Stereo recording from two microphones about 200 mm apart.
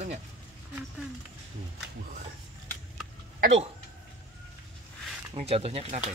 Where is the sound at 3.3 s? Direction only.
45° right (ahead or behind).